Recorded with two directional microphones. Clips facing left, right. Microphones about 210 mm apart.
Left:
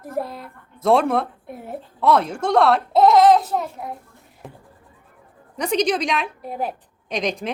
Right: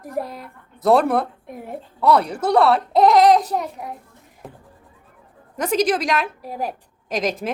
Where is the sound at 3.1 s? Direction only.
20° right (ahead or behind).